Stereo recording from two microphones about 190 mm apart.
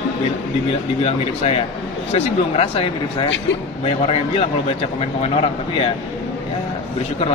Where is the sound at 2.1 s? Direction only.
30° left (ahead or behind).